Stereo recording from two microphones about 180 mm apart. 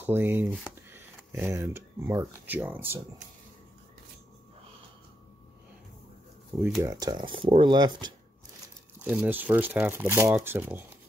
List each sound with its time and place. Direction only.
0.0 s speech: 10° right (ahead or behind)
6.8 s speech: 20° right (ahead or behind)
9.0 s speech: 10° right (ahead or behind)